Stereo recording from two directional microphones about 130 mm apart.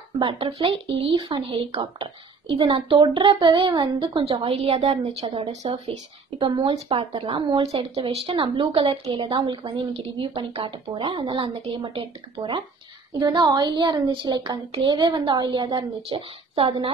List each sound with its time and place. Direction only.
0.2 s speech: 40° right (ahead or behind)
4.2 s a woman's voice: 45° right (ahead or behind)